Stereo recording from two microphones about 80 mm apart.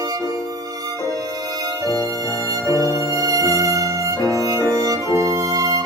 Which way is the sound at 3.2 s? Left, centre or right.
Right.